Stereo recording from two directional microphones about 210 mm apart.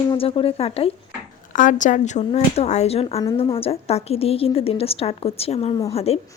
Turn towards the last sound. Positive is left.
turn(degrees=30)  # may be behind; listen again after turning